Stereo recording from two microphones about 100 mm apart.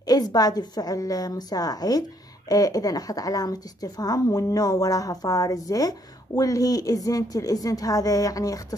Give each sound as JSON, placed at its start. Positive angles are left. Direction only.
{"t": 0.0, "sound": "a woman's voice", "side_deg": 40}